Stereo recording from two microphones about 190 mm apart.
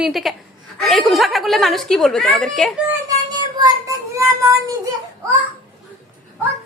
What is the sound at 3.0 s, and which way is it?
Child singing, 20° right (ahead or behind).